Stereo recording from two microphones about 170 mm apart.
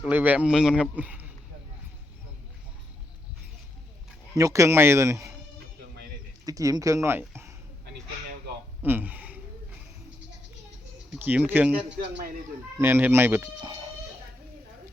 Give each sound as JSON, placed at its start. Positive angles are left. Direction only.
{"t": 0.0, "sound": "speech", "side_deg": -10}
{"t": 4.4, "sound": "speech", "side_deg": -15}
{"t": 6.4, "sound": "speech", "side_deg": -20}
{"t": 8.8, "sound": "a sound", "side_deg": -10}
{"t": 11.1, "sound": "speech", "side_deg": -10}